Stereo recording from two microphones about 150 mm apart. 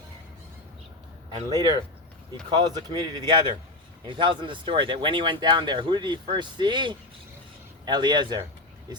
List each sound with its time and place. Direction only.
1.3 s speech: 25° right (ahead or behind)